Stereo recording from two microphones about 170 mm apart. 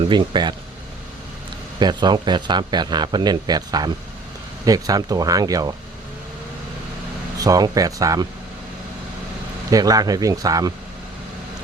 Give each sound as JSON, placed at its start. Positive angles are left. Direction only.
{"t": 0.0, "sound": "speech", "side_deg": -25}
{"t": 1.8, "sound": "speech", "side_deg": -25}
{"t": 7.3, "sound": "speech", "side_deg": -20}
{"t": 9.6, "sound": "speech", "side_deg": -20}